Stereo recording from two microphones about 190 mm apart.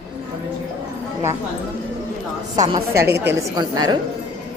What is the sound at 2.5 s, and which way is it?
A woman's voice, 20° right (ahead or behind).